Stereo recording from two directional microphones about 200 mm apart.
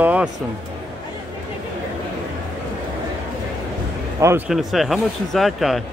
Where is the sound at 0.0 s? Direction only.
5° right (ahead or behind).